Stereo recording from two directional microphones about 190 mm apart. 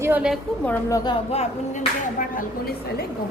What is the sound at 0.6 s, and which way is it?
Speech, 20° left (ahead or behind).